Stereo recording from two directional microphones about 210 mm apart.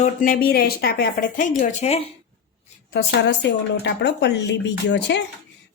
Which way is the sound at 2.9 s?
55° left (ahead or behind).